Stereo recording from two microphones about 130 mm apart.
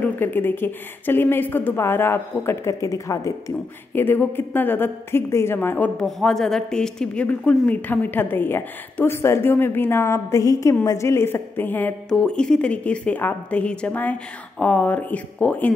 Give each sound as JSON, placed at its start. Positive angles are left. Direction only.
{"t": 0.0, "sound": "a woman's voice", "side_deg": 15}
{"t": 5.9, "sound": "a woman's voice", "side_deg": 5}